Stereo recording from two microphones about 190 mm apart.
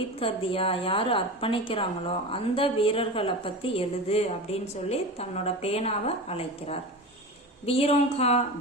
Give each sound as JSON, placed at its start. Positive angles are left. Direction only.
{"t": 0.2, "sound": "a woman's voice", "side_deg": 30}